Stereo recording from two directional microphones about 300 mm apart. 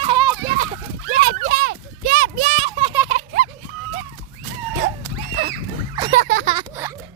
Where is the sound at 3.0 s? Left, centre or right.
Right.